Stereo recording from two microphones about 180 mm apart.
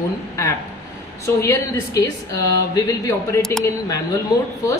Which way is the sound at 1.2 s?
15° left (ahead or behind).